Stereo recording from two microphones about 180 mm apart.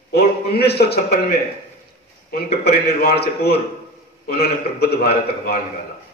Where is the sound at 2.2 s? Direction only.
55° left (ahead or behind).